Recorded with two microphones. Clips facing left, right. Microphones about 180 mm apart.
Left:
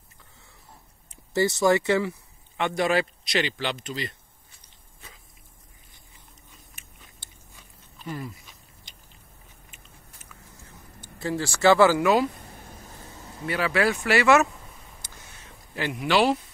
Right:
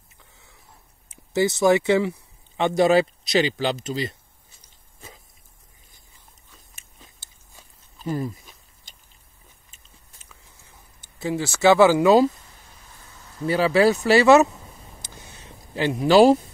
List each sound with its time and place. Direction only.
1.1 s speech: 20° right (ahead or behind); by 3.9 s 40° right (ahead or behind)
7.5 s biting: 35° right (ahead or behind)
11.1 s speech: 20° right (ahead or behind)
12.3 s a sound: 55° left (ahead or behind); by 13.4 s 30° left (ahead or behind)
13.5 s speech: 30° right (ahead or behind)
15.0 s a sound: 30° right (ahead or behind)